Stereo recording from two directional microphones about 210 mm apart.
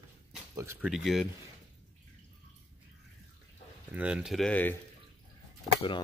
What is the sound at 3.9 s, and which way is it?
Speech, 5° right (ahead or behind).